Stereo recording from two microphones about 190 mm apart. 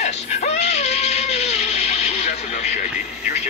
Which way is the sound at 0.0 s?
35° left (ahead or behind).